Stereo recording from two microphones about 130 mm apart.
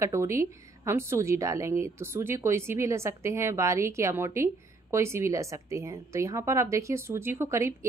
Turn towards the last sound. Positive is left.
turn(degrees=-20)  # may be behind; listen again after turning